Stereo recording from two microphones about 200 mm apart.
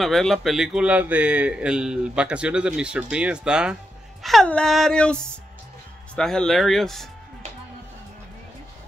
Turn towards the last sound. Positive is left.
turn(degrees=0)  # may be behind; listen again after turning